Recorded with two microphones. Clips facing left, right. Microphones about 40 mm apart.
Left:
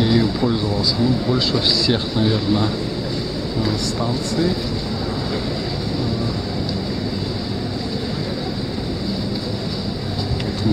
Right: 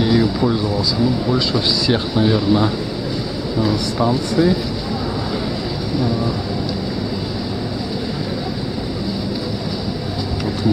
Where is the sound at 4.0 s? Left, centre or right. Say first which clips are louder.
Right 6 dB; centre.